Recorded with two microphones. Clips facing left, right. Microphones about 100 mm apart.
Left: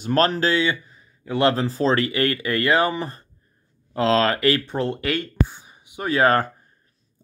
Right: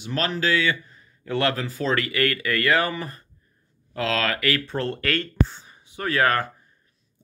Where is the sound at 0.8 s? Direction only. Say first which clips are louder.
Even; 15° left (ahead or behind).